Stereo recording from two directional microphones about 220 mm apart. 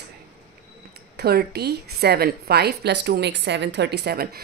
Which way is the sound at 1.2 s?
45° right (ahead or behind).